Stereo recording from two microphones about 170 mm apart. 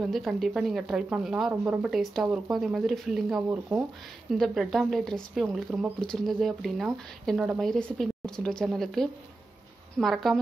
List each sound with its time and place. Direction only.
0.0 s speech: centre (ahead or behind)